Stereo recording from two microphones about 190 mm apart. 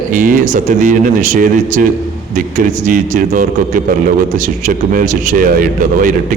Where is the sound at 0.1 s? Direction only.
45° right (ahead or behind).